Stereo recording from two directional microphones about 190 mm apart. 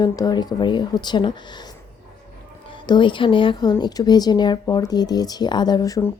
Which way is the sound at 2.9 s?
25° left (ahead or behind).